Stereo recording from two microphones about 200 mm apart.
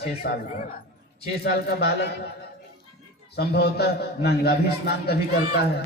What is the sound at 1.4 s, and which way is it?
Speech, 55° left (ahead or behind).